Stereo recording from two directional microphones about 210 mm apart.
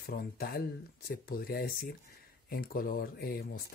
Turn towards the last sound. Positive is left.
turn(degrees=45)  # may be behind; listen again after turning